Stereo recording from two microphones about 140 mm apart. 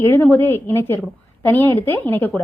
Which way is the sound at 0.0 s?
15° left (ahead or behind).